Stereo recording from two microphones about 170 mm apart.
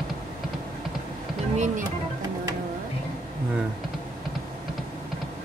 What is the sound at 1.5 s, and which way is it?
Speech, 45° right (ahead or behind).